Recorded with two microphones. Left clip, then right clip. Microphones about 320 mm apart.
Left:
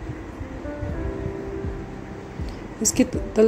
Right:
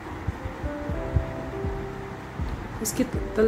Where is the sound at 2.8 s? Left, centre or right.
Centre.